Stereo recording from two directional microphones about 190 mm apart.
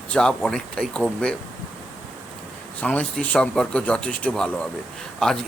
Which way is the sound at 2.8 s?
5° left (ahead or behind).